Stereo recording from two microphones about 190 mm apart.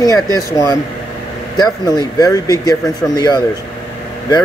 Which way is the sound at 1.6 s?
20° left (ahead or behind).